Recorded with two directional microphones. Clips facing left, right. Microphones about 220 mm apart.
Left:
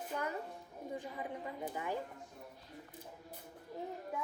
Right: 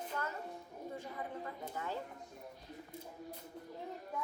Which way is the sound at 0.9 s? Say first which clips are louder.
Left 2 dB; 15° left (ahead or behind).